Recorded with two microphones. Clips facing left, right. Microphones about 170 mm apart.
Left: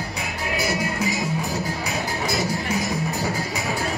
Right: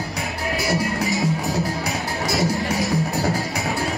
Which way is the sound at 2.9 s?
35° right (ahead or behind).